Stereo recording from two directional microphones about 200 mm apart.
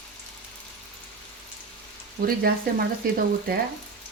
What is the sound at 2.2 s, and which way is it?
Speech, 50° right (ahead or behind).